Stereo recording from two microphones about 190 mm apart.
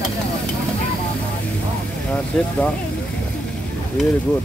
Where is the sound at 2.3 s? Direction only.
5° left (ahead or behind).